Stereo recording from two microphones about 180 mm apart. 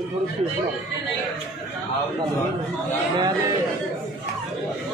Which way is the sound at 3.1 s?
20° right (ahead or behind).